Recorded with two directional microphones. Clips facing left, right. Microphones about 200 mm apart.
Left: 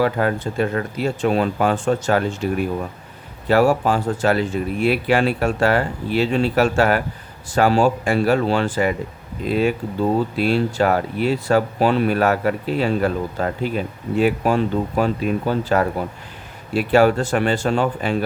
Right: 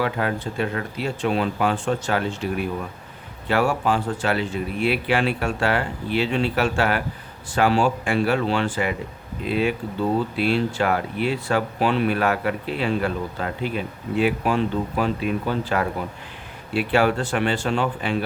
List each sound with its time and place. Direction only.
0.0 s speech: 45° left (ahead or behind)